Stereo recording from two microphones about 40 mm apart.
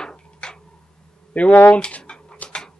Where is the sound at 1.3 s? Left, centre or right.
Left.